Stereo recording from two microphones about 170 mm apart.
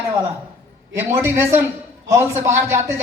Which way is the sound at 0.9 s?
15° right (ahead or behind).